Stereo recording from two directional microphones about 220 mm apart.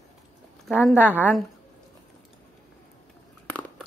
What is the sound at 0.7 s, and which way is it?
Speech, 5° right (ahead or behind).